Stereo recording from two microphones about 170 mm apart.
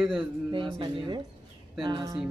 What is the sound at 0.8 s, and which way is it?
Speech, 30° right (ahead or behind).